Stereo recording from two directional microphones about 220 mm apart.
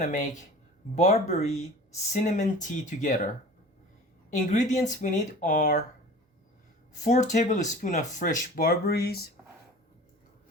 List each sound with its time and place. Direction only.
0.0 s speech: 35° left (ahead or behind)
4.4 s speech: 35° left (ahead or behind)
7.0 s speech: 35° left (ahead or behind)